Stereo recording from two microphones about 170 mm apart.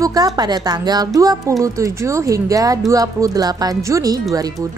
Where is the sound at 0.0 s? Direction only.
20° right (ahead or behind).